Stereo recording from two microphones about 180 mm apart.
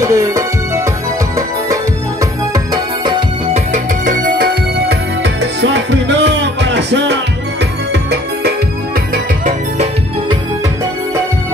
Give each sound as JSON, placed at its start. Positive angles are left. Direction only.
{"t": 0.0, "sound": "music", "side_deg": -20}
{"t": 2.5, "sound": "music", "side_deg": -20}
{"t": 3.5, "sound": "music", "side_deg": -45}
{"t": 4.8, "sound": "music", "side_deg": -75}